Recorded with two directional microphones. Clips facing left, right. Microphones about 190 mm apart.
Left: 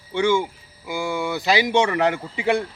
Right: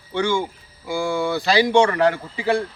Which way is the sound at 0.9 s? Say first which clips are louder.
Right 3 dB; 20° left (ahead or behind).